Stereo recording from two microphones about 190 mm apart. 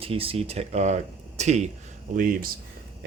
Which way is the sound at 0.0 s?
30° right (ahead or behind).